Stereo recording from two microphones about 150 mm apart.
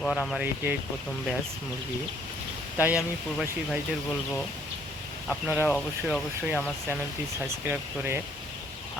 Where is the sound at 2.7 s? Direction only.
10° right (ahead or behind).